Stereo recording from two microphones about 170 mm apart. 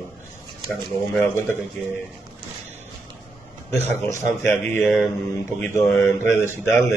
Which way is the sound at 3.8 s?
15° left (ahead or behind).